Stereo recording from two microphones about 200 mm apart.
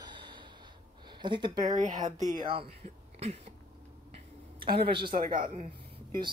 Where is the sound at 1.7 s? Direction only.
35° right (ahead or behind).